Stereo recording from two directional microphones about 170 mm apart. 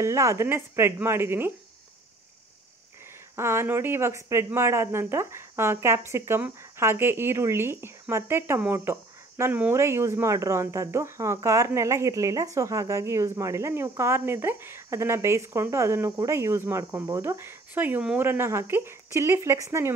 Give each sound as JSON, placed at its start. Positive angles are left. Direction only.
{"t": 0.0, "sound": "speech", "side_deg": -15}
{"t": 3.3, "sound": "speech", "side_deg": -15}